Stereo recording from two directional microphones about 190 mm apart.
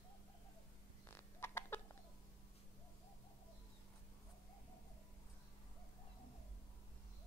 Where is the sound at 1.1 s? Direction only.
10° left (ahead or behind).